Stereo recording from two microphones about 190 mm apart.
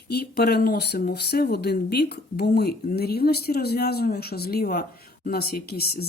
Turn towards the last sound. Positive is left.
turn(degrees=55)  # may be behind; listen again after turning